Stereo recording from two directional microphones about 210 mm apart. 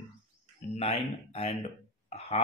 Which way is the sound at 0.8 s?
30° left (ahead or behind).